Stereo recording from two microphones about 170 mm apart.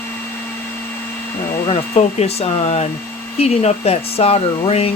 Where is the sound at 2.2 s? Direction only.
35° left (ahead or behind).